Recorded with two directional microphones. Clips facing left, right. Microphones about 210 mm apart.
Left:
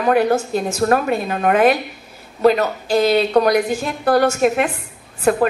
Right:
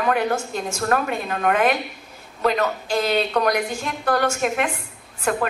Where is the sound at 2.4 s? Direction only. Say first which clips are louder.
Left 6 dB; 35° left (ahead or behind).